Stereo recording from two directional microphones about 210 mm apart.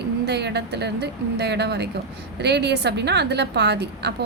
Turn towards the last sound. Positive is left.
turn(degrees=-55)  # may be behind; listen again after turning